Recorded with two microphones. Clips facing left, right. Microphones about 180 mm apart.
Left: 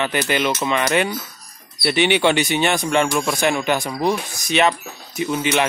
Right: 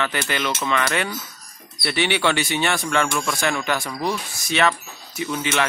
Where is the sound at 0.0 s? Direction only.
20° left (ahead or behind).